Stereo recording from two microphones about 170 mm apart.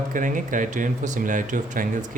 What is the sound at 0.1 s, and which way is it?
Speech, 50° right (ahead or behind).